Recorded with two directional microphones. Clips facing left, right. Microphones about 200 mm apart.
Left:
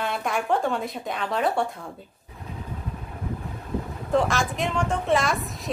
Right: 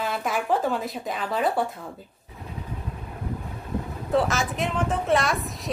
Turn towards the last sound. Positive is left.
turn(degrees=0)  # may be behind; listen again after turning